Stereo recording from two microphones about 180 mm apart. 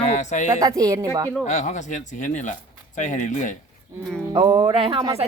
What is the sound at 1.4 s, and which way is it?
Speech, 40° left (ahead or behind).